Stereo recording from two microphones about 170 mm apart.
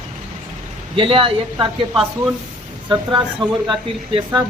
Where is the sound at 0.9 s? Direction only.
30° right (ahead or behind).